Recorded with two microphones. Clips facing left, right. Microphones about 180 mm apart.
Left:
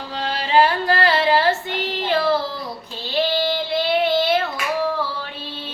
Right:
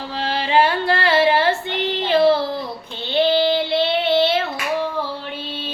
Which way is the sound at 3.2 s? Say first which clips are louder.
Right 4 dB; 25° right (ahead or behind).